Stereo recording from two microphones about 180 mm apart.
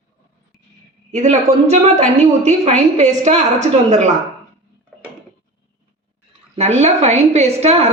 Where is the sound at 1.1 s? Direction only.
40° right (ahead or behind).